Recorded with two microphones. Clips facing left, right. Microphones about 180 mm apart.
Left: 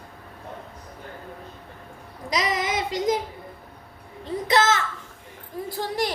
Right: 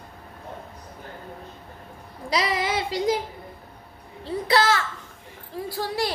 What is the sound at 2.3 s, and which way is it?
Child singing, 30° right (ahead or behind).